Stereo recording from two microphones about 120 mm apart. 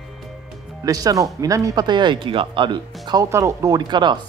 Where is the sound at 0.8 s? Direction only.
30° right (ahead or behind).